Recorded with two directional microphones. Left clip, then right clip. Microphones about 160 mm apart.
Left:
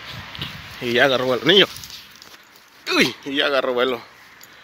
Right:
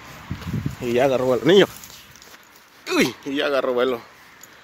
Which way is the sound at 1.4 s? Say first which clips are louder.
Left 1 dB; 35° right (ahead or behind).